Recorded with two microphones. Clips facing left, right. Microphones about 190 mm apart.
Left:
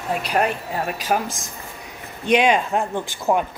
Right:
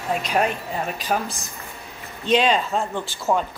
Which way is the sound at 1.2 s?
90° left.